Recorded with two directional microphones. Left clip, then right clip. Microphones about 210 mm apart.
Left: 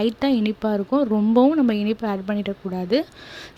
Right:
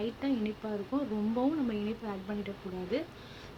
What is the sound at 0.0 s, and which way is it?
Speech, 50° left (ahead or behind).